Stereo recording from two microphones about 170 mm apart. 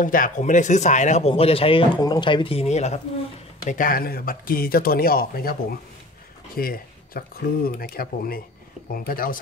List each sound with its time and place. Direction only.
0.0 s speech: 50° left (ahead or behind)
3.6 s speech: 50° left (ahead or behind)